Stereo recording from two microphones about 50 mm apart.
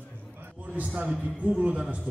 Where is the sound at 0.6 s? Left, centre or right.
Right.